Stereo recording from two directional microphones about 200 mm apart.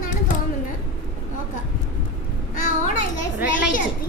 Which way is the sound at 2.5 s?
45° left (ahead or behind).